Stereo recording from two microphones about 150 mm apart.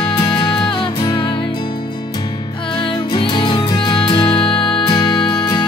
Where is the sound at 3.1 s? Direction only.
30° left (ahead or behind).